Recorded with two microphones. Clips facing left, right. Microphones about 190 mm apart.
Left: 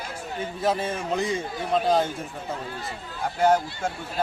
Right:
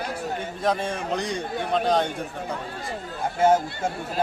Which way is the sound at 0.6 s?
5° left (ahead or behind).